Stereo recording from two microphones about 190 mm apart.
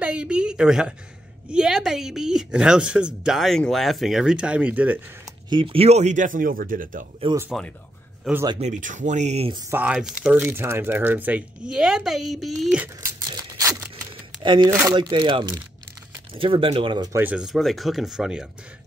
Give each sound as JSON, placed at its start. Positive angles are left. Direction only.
{"t": 0.0, "sound": "a sound", "side_deg": -5}
{"t": 1.5, "sound": "speech", "side_deg": -5}
{"t": 5.5, "sound": "speech", "side_deg": -25}
{"t": 7.5, "sound": "speech", "side_deg": 0}
{"t": 8.5, "sound": "speech", "side_deg": -40}
{"t": 9.6, "sound": "speech", "side_deg": -10}
{"t": 13.3, "sound": "a sound", "side_deg": -20}
{"t": 14.4, "sound": "speech", "side_deg": -25}
{"t": 17.2, "sound": "speech", "side_deg": -5}